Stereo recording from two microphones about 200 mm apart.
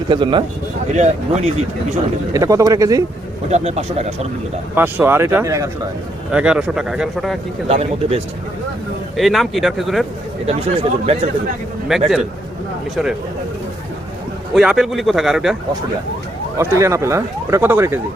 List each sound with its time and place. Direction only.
0.1 s speech: 25° right (ahead or behind)
0.9 s speech: 35° right (ahead or behind)
2.3 s speech: 15° right (ahead or behind)
3.5 s speech: 30° right (ahead or behind)
4.7 s a man's voice: 10° right (ahead or behind)
7.7 s speech: 30° right (ahead or behind)
9.1 s a man's voice: centre (ahead or behind)
10.4 s speech: 30° right (ahead or behind)
11.9 s a man's voice: centre (ahead or behind)
14.5 s a man's voice: centre (ahead or behind)
16.6 s speech: 15° right (ahead or behind)